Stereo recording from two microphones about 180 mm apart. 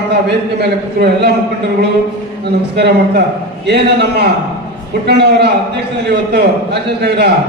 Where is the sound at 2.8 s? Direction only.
65° right (ahead or behind).